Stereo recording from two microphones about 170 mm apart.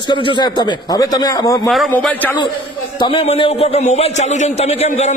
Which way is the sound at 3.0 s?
30° left (ahead or behind).